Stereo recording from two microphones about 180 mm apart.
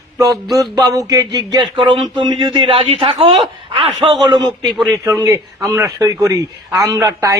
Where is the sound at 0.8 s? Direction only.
20° right (ahead or behind).